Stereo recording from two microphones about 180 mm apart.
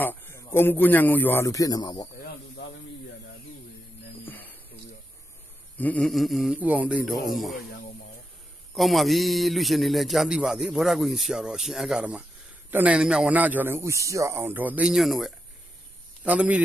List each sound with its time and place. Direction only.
0.0 s a man's voice: 10° left (ahead or behind)
2.2 s snake: 70° left (ahead or behind)
4.3 s a sound: 10° left (ahead or behind)
5.8 s a man's voice: 5° left (ahead or behind)
8.7 s a man's voice: centre (ahead or behind)